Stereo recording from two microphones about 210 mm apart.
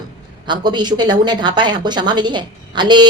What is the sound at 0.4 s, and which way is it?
A woman's voice, 20° right (ahead or behind).